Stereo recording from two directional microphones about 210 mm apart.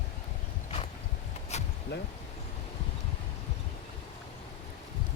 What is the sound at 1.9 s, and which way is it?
Speech, 55° left (ahead or behind).